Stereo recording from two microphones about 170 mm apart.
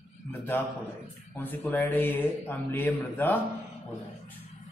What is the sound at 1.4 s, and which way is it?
A man's voice, 10° left (ahead or behind).